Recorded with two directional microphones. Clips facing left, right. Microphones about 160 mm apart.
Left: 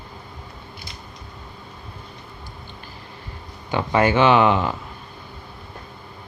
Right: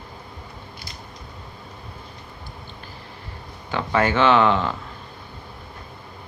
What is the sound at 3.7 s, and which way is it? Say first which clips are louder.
Speech: left 2 dB; 15° left (ahead or behind).